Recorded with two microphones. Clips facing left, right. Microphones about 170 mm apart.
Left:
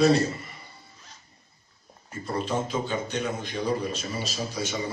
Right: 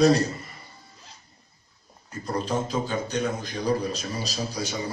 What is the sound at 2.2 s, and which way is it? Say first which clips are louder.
A man's voice: right 1 dB; 40° right (ahead or behind).